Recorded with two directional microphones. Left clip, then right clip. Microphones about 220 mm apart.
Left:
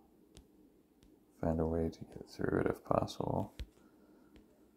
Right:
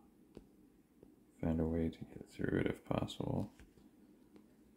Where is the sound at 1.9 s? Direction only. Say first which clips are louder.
Left 1 dB; 10° right (ahead or behind).